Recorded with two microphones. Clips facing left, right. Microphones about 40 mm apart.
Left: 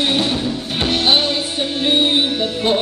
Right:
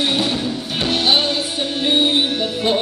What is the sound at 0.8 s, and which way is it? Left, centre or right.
Music, centre.